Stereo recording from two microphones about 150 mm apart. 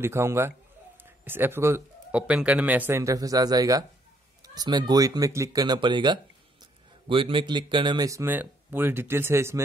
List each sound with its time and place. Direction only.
0.0 s speech: 15° right (ahead or behind)